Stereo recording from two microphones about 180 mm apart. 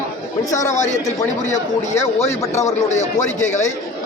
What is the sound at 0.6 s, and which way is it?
Speech, 40° left (ahead or behind).